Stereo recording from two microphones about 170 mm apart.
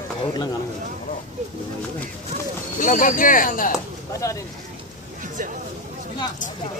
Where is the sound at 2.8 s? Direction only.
55° left (ahead or behind).